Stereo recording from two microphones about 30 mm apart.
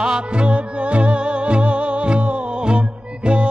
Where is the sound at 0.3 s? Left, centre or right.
Right.